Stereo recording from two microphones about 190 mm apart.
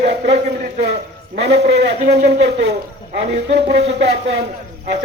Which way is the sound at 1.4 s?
65° right (ahead or behind).